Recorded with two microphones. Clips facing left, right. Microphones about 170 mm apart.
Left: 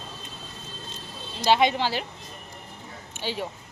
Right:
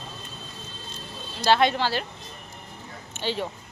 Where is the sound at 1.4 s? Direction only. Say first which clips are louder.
Even; 15° left (ahead or behind).